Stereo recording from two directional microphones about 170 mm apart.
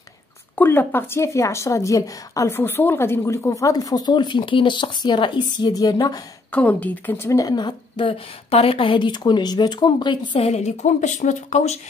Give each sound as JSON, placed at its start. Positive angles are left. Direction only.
{"t": 0.6, "sound": "a woman's voice", "side_deg": 10}
{"t": 6.5, "sound": "a woman's voice", "side_deg": 10}